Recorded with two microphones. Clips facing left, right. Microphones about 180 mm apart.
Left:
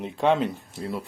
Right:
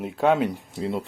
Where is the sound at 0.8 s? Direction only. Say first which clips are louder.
Right 4 dB; 20° right (ahead or behind).